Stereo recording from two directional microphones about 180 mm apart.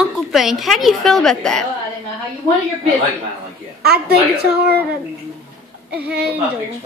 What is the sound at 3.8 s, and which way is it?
Speech, 60° right (ahead or behind).